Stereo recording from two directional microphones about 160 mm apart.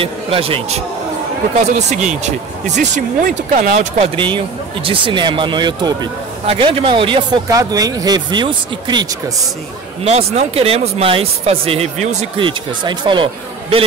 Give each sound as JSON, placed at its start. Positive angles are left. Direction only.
{"t": 0.0, "sound": "speech", "side_deg": -35}
{"t": 4.0, "sound": "speech", "side_deg": -30}
{"t": 10.0, "sound": "speech", "side_deg": -40}
{"t": 12.4, "sound": "speech", "side_deg": -30}